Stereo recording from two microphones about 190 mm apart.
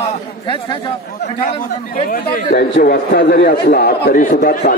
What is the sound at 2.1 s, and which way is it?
A man's voice, 50° left (ahead or behind).